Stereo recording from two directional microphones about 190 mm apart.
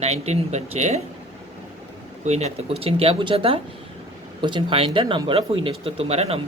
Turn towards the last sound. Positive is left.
turn(degrees=-35)  # may be behind; listen again after turning